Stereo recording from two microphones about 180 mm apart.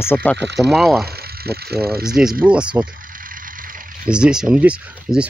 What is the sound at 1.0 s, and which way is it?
Speech, 60° right (ahead or behind).